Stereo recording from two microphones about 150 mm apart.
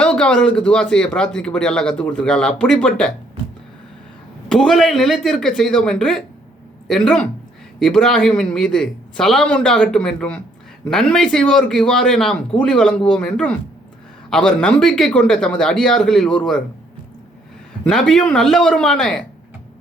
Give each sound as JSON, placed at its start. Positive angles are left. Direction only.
{"t": 0.0, "sound": "speech", "side_deg": 5}
{"t": 4.4, "sound": "speech", "side_deg": 5}
{"t": 17.8, "sound": "speech", "side_deg": 5}